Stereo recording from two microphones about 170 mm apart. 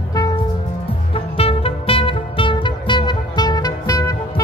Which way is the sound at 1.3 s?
35° left (ahead or behind).